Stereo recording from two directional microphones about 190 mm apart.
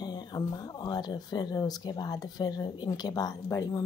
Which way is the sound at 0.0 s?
20° left (ahead or behind).